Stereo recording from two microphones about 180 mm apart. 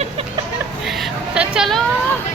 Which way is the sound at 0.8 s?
5° right (ahead or behind).